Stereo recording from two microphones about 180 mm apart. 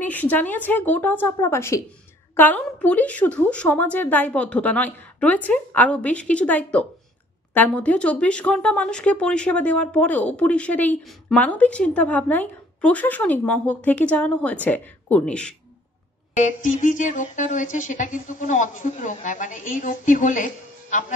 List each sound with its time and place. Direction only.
0.0 s speech: 10° left (ahead or behind)
16.3 s speech: 45° left (ahead or behind)